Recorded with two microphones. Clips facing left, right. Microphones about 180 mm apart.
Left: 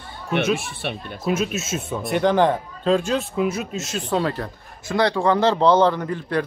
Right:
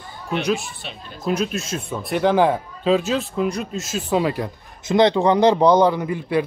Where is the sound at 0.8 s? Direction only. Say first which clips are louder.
Left 8 dB; 60° left (ahead or behind).